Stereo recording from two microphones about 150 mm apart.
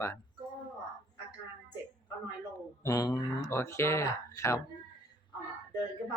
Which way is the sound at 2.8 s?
25° left (ahead or behind).